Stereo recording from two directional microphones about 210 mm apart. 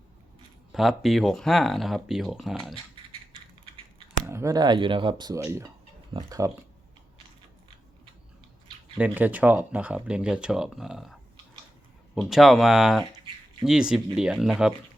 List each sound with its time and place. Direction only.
0.7 s speech: centre (ahead or behind)
2.9 s a sound: 25° right (ahead or behind)
4.3 s speech: 15° right (ahead or behind)
9.0 s speech: 5° right (ahead or behind)